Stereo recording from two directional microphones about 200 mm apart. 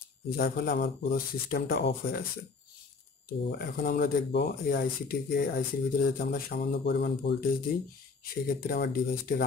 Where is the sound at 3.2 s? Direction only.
45° left (ahead or behind).